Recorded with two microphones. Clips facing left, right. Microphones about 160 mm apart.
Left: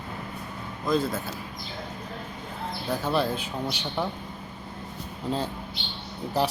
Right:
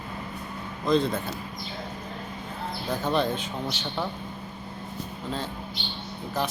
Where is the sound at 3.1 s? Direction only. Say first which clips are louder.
Right 1 dB; 5° left (ahead or behind).